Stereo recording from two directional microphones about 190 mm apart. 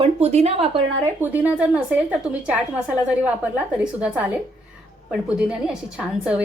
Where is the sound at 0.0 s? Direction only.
35° right (ahead or behind).